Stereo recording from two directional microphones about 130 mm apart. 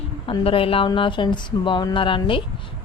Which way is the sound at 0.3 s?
45° left (ahead or behind).